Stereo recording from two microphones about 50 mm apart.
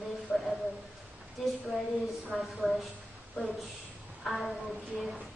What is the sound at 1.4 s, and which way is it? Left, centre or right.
A woman's voice, centre.